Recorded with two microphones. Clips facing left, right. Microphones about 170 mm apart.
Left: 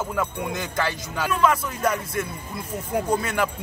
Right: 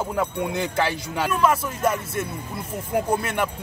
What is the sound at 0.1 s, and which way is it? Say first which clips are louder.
Speech: right 2 dB; 30° right (ahead or behind).